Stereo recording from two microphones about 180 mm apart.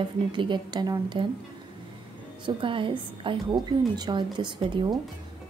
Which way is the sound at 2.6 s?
30° right (ahead or behind).